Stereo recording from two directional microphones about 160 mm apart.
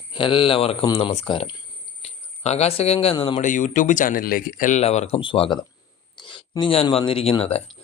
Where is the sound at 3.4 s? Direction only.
50° left (ahead or behind).